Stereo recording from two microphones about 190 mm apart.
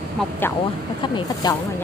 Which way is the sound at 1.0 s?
20° left (ahead or behind).